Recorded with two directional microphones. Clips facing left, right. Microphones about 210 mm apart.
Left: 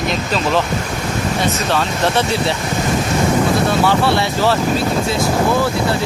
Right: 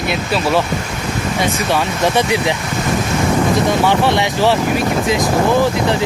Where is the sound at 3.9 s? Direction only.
15° right (ahead or behind).